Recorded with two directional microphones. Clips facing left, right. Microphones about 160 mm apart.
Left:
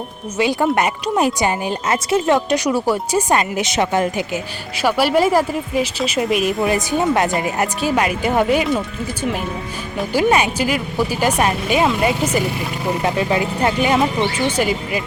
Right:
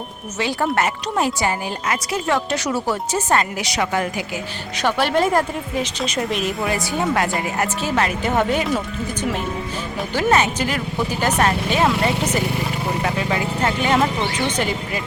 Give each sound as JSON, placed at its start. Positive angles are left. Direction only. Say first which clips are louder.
{"t": 0.3, "sound": "speech", "louder": "left 4 dB", "side_deg": 15}
{"t": 4.8, "sound": "speech", "louder": "left 3 dB", "side_deg": 5}
{"t": 10.0, "sound": "speech", "louder": "left 2 dB", "side_deg": 10}